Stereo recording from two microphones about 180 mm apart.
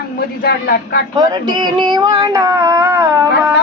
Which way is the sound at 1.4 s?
25° right (ahead or behind).